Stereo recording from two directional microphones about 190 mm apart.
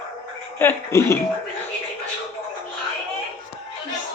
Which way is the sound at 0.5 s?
10° left (ahead or behind).